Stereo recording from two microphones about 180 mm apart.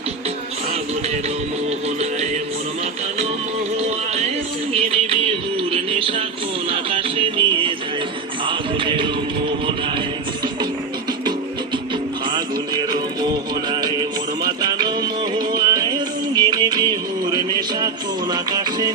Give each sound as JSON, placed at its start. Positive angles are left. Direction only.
{"t": 4.7, "sound": "music", "side_deg": -30}
{"t": 12.3, "sound": "music", "side_deg": -25}
{"t": 14.4, "sound": "music", "side_deg": -25}